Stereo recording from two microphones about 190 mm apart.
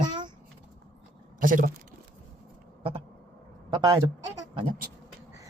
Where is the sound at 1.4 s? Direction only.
45° right (ahead or behind).